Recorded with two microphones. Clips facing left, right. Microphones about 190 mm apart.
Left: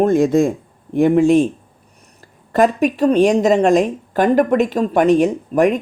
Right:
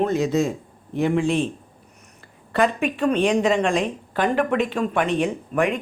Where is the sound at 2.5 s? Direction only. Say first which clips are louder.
Left 6 dB; 40° left (ahead or behind).